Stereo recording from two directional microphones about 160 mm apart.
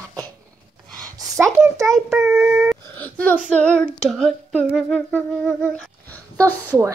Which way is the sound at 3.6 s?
5° left (ahead or behind).